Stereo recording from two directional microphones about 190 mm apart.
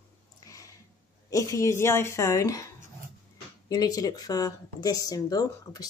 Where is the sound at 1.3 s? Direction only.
15° left (ahead or behind).